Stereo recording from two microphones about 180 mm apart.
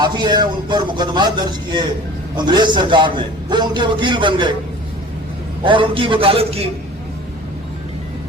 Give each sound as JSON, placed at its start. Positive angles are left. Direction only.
{"t": 0.0, "sound": "a man's voice", "side_deg": -25}
{"t": 2.3, "sound": "a man's voice", "side_deg": -25}
{"t": 5.6, "sound": "a man's voice", "side_deg": -30}